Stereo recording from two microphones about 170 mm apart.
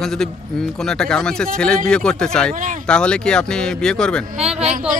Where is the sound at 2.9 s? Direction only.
5° left (ahead or behind).